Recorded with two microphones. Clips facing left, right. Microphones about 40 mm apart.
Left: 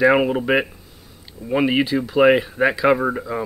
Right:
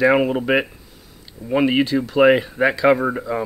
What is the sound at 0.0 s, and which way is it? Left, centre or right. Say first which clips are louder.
Speech: even; centre.